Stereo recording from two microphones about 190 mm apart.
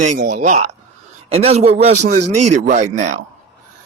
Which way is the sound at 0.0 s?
45° right (ahead or behind).